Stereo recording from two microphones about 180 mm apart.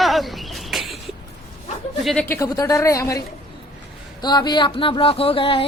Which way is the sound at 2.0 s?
Centre (ahead or behind).